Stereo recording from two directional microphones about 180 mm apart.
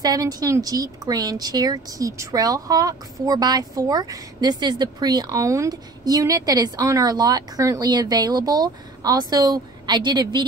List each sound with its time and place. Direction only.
0.0 s speech: 20° right (ahead or behind)